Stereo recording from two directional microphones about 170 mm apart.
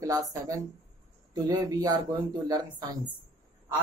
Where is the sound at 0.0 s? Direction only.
20° right (ahead or behind).